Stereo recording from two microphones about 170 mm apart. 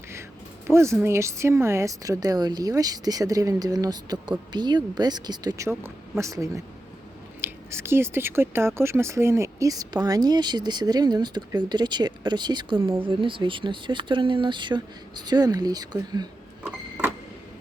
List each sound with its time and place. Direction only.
0.7 s speech: 15° right (ahead or behind)